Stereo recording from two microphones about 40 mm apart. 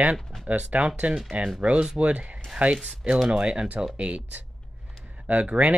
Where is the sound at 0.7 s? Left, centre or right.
Right.